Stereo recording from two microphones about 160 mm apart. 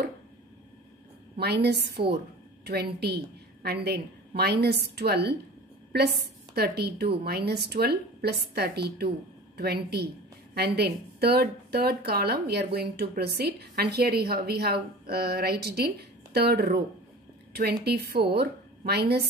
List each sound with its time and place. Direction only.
1.4 s a woman's voice: 90° right
10.5 s a woman's voice: 90° right